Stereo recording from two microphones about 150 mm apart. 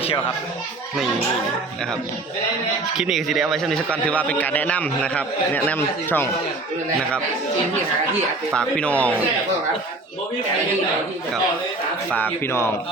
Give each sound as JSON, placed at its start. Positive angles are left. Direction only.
{"t": 3.0, "sound": "a man's voice", "side_deg": 0}
{"t": 8.5, "sound": "a man's voice", "side_deg": 5}
{"t": 12.1, "sound": "a man's voice", "side_deg": 15}